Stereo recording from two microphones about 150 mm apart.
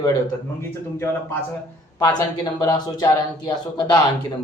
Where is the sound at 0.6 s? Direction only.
15° left (ahead or behind).